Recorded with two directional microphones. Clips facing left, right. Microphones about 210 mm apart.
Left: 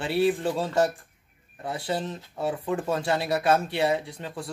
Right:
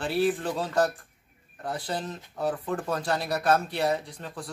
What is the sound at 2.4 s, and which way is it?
Speech, 10° left (ahead or behind).